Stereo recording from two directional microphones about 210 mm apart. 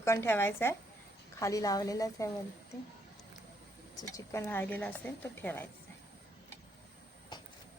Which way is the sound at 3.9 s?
15° left (ahead or behind).